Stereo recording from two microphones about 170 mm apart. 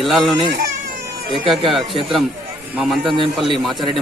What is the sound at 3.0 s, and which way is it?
Speech, 30° right (ahead or behind).